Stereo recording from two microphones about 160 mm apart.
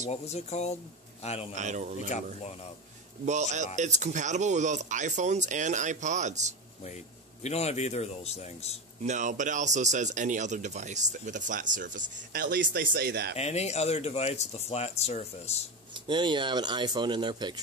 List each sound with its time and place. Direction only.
0.1 s a man's voice: 45° left (ahead or behind)
1.5 s speech: 45° right (ahead or behind)
3.3 s speech: 45° right (ahead or behind)
7.4 s a man's voice: 40° left (ahead or behind)
9.0 s speech: 50° right (ahead or behind); by 13.3 s 85° right
13.4 s speech: 40° left (ahead or behind)
15.9 s a man's voice: 30° right (ahead or behind)